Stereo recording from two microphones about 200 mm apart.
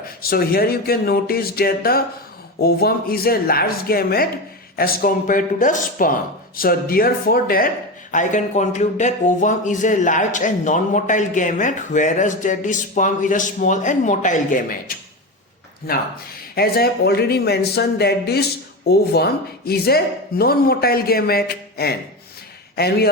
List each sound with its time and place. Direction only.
0.3 s speech: 50° left (ahead or behind)
16.6 s a man's voice: 50° left (ahead or behind)